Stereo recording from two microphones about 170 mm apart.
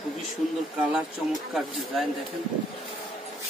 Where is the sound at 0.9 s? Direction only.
Centre (ahead or behind).